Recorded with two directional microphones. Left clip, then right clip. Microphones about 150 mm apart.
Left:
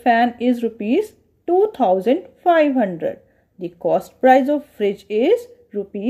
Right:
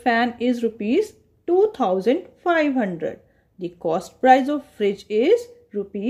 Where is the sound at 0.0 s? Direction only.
15° left (ahead or behind).